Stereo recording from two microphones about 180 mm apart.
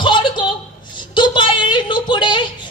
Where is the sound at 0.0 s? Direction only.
25° left (ahead or behind).